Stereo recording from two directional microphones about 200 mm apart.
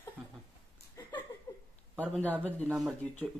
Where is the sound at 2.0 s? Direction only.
10° left (ahead or behind).